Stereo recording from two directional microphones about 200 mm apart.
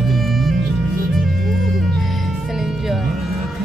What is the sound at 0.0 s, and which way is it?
Music, centre (ahead or behind).